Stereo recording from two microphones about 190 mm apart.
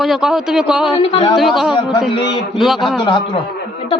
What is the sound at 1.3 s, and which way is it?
A man's voice, centre (ahead or behind).